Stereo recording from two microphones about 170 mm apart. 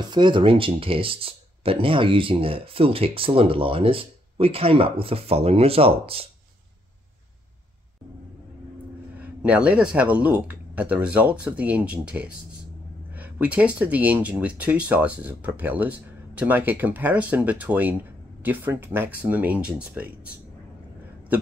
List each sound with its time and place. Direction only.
0.1 s speech: 25° right (ahead or behind)
9.2 s speech: 5° right (ahead or behind)